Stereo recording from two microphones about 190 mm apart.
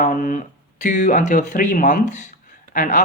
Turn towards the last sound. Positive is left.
turn(degrees=40)  # may be behind; listen again after turning